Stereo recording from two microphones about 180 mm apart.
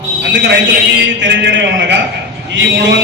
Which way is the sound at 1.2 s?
80° right.